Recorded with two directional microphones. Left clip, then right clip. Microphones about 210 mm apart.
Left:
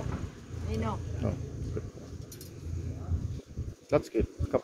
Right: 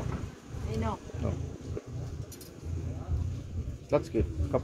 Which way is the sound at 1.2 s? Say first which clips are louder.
Left 2 dB; 25° left (ahead or behind).